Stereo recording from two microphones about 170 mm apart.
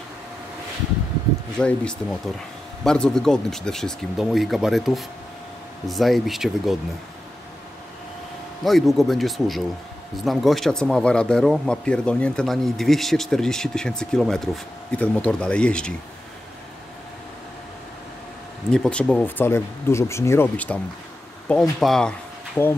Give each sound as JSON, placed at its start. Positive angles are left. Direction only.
{"t": 1.6, "sound": "speech", "side_deg": 5}
{"t": 8.6, "sound": "speech", "side_deg": 0}
{"t": 18.7, "sound": "speech", "side_deg": 5}
{"t": 22.6, "sound": "speech", "side_deg": 15}